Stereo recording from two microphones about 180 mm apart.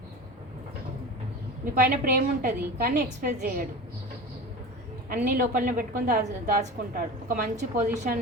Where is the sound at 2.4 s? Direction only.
55° right (ahead or behind).